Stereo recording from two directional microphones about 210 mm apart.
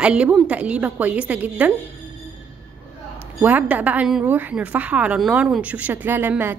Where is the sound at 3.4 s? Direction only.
10° right (ahead or behind).